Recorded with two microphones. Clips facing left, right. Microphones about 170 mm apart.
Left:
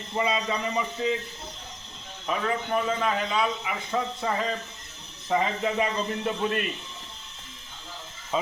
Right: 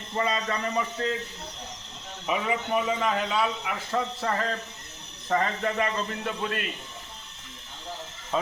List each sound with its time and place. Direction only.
0.1 s a man's voice: 10° left (ahead or behind)
2.2 s a man's voice: 10° right (ahead or behind); by 6.1 s 10° left (ahead or behind)
6.2 s a man's voice: 30° left (ahead or behind)